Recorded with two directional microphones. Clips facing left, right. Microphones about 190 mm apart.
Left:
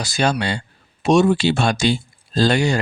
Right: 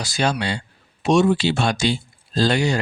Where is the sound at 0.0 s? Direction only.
45° left (ahead or behind).